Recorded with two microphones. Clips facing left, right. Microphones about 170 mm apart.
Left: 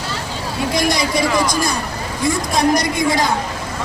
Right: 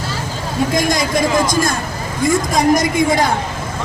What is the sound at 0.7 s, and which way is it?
Speech, 50° right (ahead or behind).